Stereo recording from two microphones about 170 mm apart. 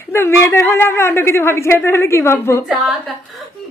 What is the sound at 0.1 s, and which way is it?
A woman's voice, 15° left (ahead or behind).